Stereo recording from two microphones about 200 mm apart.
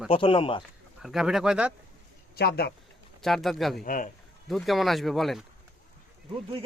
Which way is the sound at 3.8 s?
40° left (ahead or behind).